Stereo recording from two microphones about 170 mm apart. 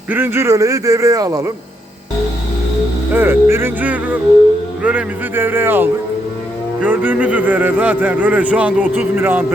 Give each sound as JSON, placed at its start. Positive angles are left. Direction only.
{"t": 0.1, "sound": "speech", "side_deg": -10}
{"t": 3.1, "sound": "speech", "side_deg": -15}